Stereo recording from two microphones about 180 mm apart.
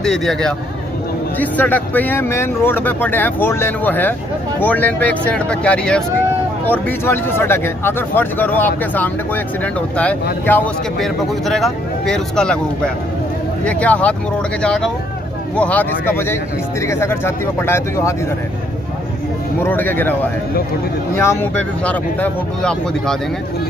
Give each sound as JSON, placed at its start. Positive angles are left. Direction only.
{"t": 0.0, "sound": "speech", "side_deg": 0}
{"t": 19.6, "sound": "speech", "side_deg": 10}
{"t": 21.2, "sound": "speech", "side_deg": 10}